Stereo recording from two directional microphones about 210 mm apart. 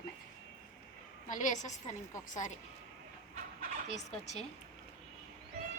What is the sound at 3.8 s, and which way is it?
Speech, 35° left (ahead or behind).